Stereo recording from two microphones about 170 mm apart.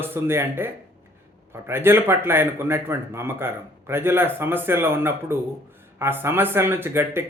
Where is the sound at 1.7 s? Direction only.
15° right (ahead or behind).